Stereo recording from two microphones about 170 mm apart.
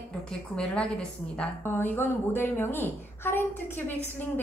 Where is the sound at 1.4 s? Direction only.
10° left (ahead or behind).